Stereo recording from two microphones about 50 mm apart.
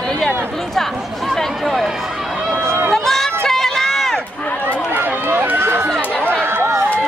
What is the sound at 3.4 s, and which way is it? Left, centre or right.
Run, centre.